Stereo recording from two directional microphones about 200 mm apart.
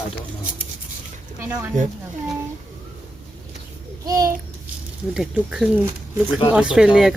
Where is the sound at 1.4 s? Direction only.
10° right (ahead or behind).